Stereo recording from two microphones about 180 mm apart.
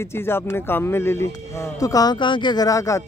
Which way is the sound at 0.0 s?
15° left (ahead or behind).